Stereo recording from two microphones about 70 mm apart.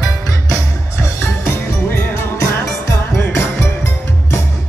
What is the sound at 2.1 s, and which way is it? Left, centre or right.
Music, left.